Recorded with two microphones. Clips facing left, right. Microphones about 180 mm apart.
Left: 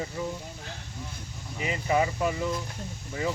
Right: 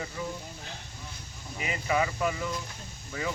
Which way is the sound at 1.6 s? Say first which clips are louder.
Left 3 dB; 25° left (ahead or behind).